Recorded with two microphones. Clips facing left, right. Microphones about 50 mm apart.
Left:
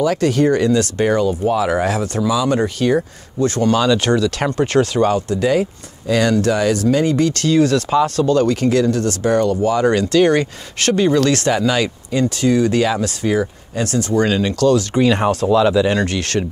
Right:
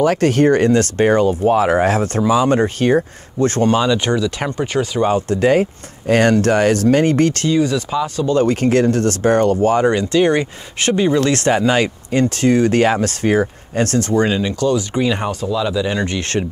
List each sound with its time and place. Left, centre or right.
0.0 s speech: right
3.7 s speech: centre
5.1 s speech: right
7.4 s speech: centre
8.3 s speech: right
8.5 s speech: right
10.0 s speech: centre; by 14.1 s right
14.3 s speech: centre
16.0 s speech: centre